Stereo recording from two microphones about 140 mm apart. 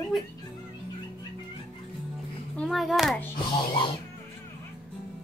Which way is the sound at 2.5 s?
5° left (ahead or behind).